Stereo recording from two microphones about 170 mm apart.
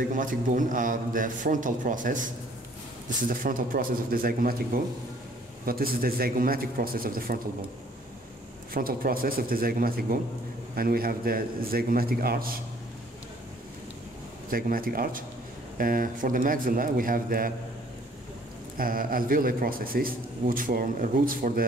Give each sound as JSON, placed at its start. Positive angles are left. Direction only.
{"t": 0.1, "sound": "a man's voice", "side_deg": -50}
{"t": 8.7, "sound": "a man's voice", "side_deg": -60}
{"t": 14.5, "sound": "a man's voice", "side_deg": -60}
{"t": 18.8, "sound": "a man's voice", "side_deg": -55}